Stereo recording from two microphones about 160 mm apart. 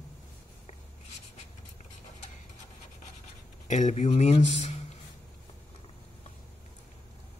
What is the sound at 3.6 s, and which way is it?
Speech, 45° left (ahead or behind).